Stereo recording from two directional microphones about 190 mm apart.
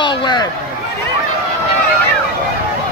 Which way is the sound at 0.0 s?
25° left (ahead or behind).